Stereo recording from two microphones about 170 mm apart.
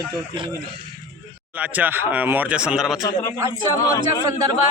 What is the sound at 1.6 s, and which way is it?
Speech, 10° right (ahead or behind).